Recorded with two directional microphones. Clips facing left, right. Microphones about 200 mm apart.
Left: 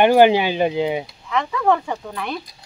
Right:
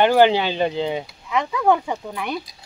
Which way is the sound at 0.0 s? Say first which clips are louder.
Left 2 dB; 15° left (ahead or behind).